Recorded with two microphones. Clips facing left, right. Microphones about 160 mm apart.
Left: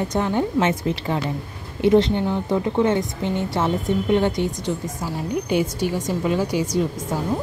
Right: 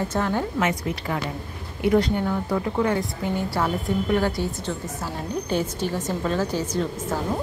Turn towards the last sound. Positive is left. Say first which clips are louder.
# left 3 dB
turn(degrees=10)  # may be behind; listen again after turning